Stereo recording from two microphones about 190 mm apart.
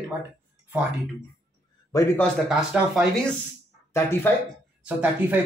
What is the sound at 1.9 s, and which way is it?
Speech, 15° left (ahead or behind).